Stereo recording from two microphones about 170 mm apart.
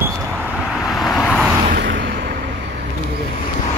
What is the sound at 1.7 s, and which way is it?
Vehicle, 90° right.